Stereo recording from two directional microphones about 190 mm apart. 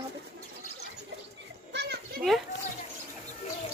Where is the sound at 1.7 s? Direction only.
60° right (ahead or behind).